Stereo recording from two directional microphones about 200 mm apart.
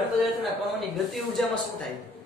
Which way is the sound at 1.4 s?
Centre (ahead or behind).